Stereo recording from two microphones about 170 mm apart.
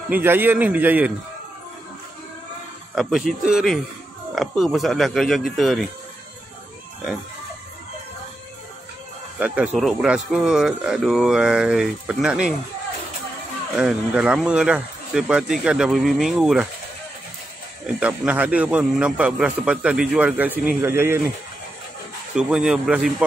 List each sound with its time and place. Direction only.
0.1 s a man's voice: 10° right (ahead or behind)
2.9 s speech: centre (ahead or behind)
9.8 s speech: 5° right (ahead or behind)
13.7 s speech: 5° right (ahead or behind)
17.8 s a man's voice: 5° right (ahead or behind)
22.3 s speech: 5° right (ahead or behind)